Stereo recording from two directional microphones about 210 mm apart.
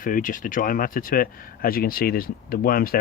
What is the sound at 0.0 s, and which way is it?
Speech, 40° left (ahead or behind).